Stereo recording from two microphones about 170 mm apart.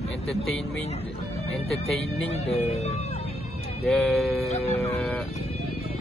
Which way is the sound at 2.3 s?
40° left (ahead or behind).